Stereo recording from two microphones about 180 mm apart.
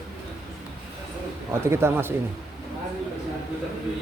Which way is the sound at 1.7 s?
15° right (ahead or behind).